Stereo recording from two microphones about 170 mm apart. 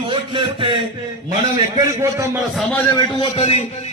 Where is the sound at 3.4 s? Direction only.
35° left (ahead or behind).